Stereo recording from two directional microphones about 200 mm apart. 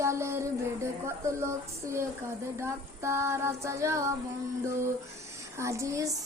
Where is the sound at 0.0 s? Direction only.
15° right (ahead or behind).